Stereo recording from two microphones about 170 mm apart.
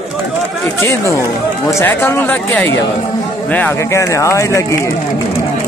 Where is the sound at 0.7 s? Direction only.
15° left (ahead or behind).